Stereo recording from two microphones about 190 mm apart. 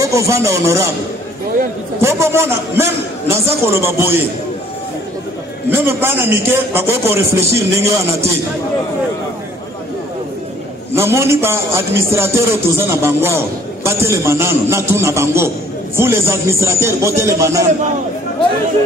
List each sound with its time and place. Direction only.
0.0 s speech: 15° right (ahead or behind)
2.0 s speech: 15° right (ahead or behind)
5.7 s speech: 10° right (ahead or behind)
11.0 s speech: 15° right (ahead or behind)